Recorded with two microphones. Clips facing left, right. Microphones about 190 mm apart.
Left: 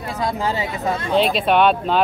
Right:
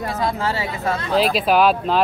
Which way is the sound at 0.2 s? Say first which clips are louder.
Left 2 dB; 15° left (ahead or behind).